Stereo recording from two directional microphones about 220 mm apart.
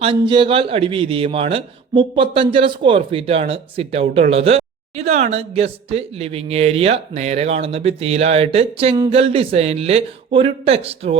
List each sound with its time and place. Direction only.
0.0 s a man's voice: 25° right (ahead or behind)